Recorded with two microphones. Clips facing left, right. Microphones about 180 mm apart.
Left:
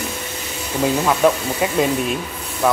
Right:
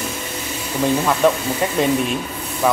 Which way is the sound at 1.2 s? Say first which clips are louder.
Even; 5° left (ahead or behind).